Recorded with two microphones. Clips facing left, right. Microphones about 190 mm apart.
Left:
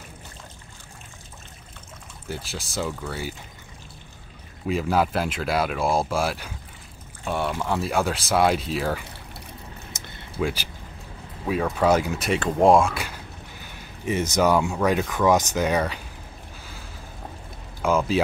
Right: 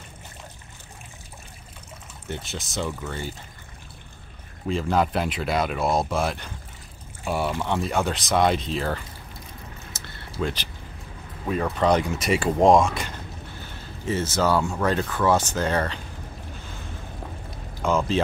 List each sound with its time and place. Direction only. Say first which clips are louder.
2.2 s speech: even; 5° left (ahead or behind)
4.6 s speech: even; 5° left (ahead or behind)
9.9 s a sound: even; 20° left (ahead or behind)
10.4 s speech: left 2 dB; 10° left (ahead or behind)
17.8 s speech: left 1 dB; 5° left (ahead or behind)